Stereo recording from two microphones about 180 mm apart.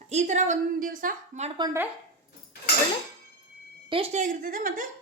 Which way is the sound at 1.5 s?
25° right (ahead or behind).